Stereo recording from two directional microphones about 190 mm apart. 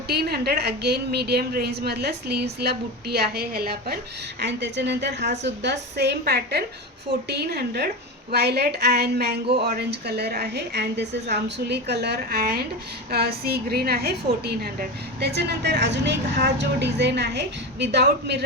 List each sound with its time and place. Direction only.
0.1 s a woman's voice: 55° right (ahead or behind)
4.4 s a woman's voice: 65° right (ahead or behind)